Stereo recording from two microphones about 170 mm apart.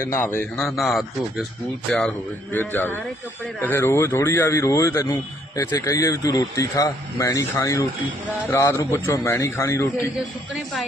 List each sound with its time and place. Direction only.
0.0 s speech: 15° left (ahead or behind)
0.5 s a man's voice: centre (ahead or behind); by 10.1 s 15° left (ahead or behind)